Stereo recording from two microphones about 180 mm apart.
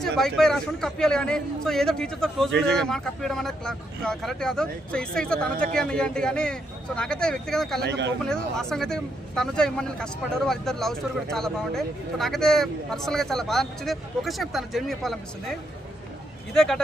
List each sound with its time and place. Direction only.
0.0 s speech: centre (ahead or behind)
7.8 s speech: 75° right (ahead or behind)
8.2 s speech: centre (ahead or behind)
16.6 s speech: 5° left (ahead or behind)